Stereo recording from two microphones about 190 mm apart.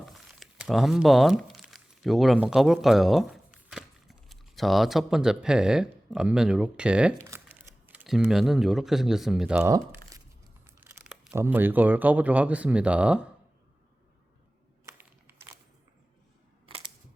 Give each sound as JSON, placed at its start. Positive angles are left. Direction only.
{"t": 0.0, "sound": "speech", "side_deg": 0}
{"t": 7.3, "sound": "crumpling", "side_deg": -15}
{"t": 7.9, "sound": "speech", "side_deg": -5}
{"t": 9.7, "sound": "crumpling", "side_deg": -20}
{"t": 10.8, "sound": "speech", "side_deg": -5}
{"t": 14.8, "sound": "a sound", "side_deg": -10}